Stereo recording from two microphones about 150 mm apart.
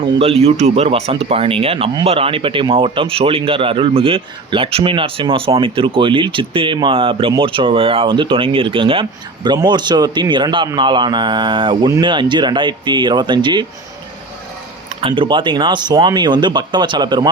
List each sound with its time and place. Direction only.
0.0 s speech: 40° right (ahead or behind)
15.0 s speech: 35° right (ahead or behind)